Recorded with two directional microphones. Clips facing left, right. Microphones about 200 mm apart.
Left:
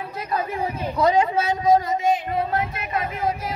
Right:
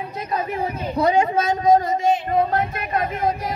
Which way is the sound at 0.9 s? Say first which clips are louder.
Right 1 dB; 35° right (ahead or behind).